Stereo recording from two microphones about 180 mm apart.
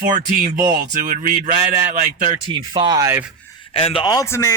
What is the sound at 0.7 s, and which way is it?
Speech, 45° right (ahead or behind).